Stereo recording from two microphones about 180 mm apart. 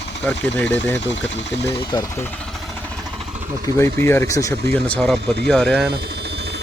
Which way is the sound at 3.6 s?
15° left (ahead or behind).